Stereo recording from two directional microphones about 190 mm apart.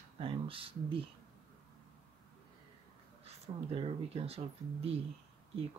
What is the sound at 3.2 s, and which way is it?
Speech, 30° right (ahead or behind).